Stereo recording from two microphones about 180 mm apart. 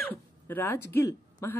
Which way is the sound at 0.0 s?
10° left (ahead or behind).